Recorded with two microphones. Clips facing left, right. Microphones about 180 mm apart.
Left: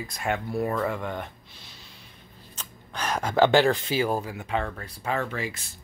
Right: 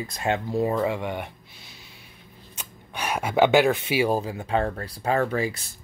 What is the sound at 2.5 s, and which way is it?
Speech, 10° right (ahead or behind).